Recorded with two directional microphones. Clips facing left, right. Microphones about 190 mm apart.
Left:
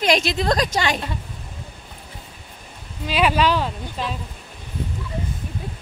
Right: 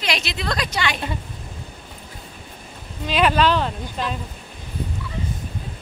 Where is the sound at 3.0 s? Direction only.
10° left (ahead or behind).